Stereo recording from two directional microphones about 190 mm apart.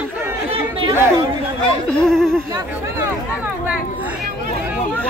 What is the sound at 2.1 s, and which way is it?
Speech, 5° left (ahead or behind).